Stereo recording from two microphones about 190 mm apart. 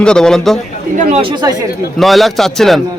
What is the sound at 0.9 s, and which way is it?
Speech, 40° right (ahead or behind).